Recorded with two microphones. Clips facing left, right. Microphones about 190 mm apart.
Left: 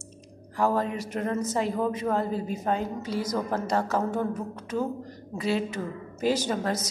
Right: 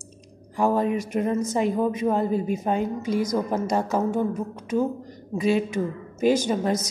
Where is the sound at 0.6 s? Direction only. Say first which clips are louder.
Right 4 dB; 15° right (ahead or behind).